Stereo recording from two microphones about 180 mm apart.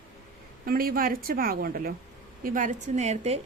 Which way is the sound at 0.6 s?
55° right (ahead or behind).